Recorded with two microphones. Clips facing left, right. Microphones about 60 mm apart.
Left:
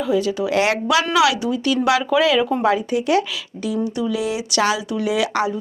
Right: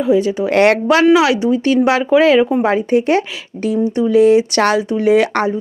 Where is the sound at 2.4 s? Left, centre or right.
Centre.